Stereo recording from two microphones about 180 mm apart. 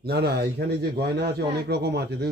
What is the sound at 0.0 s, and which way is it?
A man's voice, 60° right (ahead or behind).